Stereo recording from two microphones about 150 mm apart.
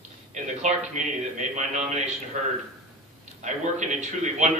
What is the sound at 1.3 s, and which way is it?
Speech, 55° right (ahead or behind).